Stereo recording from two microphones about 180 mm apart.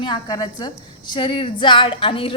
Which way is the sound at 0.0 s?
20° left (ahead or behind).